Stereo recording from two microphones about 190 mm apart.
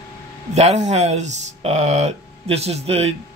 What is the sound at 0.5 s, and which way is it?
Speech, 35° right (ahead or behind).